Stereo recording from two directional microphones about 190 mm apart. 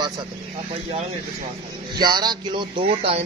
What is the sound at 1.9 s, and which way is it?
A man's voice, 20° right (ahead or behind).